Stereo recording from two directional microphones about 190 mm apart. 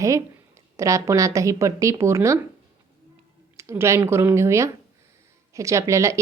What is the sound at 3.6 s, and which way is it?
A woman's voice, 15° right (ahead or behind).